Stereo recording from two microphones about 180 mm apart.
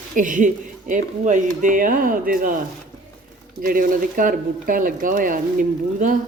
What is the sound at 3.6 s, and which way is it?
A woman's voice, 50° right (ahead or behind).